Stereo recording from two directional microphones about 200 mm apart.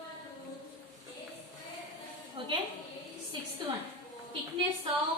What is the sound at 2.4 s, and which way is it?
Speech, 25° right (ahead or behind).